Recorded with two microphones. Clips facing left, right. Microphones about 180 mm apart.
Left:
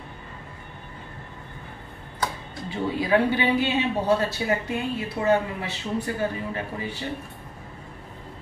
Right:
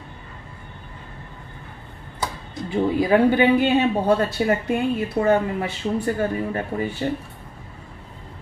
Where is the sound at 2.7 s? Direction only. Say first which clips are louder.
Right 5 dB; 50° right (ahead or behind).